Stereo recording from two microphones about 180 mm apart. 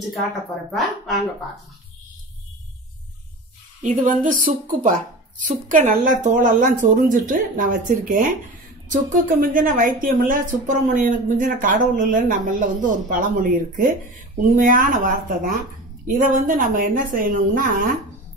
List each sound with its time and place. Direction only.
0.7 s speech: centre (ahead or behind)
3.8 s speech: 45° right (ahead or behind)
5.5 s speech: 45° right (ahead or behind)